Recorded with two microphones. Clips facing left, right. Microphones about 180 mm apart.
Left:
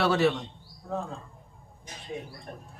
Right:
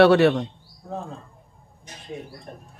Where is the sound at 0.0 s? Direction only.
65° right (ahead or behind).